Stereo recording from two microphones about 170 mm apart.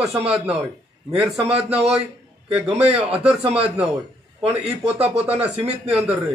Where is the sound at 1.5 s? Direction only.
35° right (ahead or behind).